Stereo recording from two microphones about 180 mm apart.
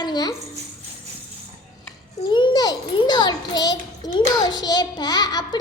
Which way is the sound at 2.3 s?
25° left (ahead or behind).